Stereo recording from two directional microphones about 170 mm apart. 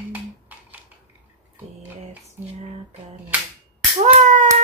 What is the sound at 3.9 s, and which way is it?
Speech, 45° right (ahead or behind).